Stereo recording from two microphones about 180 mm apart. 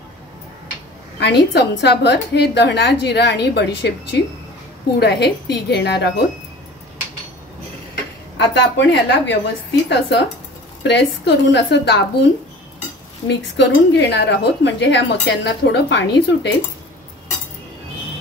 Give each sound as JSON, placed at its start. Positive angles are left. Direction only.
{"t": 1.2, "sound": "speech", "side_deg": 70}
{"t": 8.4, "sound": "speech", "side_deg": 80}
{"t": 13.3, "sound": "speech", "side_deg": 75}